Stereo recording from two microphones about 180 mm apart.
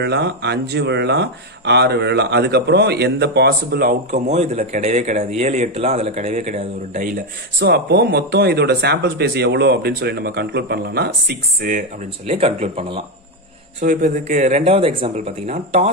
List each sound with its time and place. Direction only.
0.0 s speech: 70° right (ahead or behind)
4.1 s speech: 40° right (ahead or behind)
7.5 s speech: 65° right (ahead or behind)
12.3 s speech: 35° right (ahead or behind)
13.7 s speech: 50° right (ahead or behind)